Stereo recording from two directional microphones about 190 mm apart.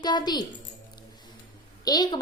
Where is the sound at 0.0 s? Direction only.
20° left (ahead or behind).